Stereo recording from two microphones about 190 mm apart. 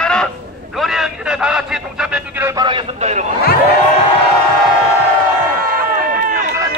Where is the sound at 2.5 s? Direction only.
25° right (ahead or behind).